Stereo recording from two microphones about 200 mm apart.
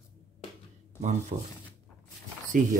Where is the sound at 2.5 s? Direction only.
40° right (ahead or behind).